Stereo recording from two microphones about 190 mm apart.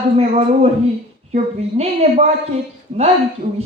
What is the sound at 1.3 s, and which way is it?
Speech, 35° right (ahead or behind).